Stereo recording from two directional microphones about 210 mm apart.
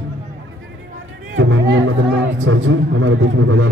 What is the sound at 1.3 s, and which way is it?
Music, 65° right (ahead or behind).